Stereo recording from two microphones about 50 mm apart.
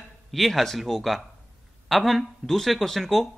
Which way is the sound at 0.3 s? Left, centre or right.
Centre.